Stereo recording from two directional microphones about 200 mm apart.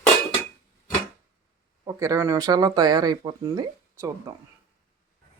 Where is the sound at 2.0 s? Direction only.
15° right (ahead or behind).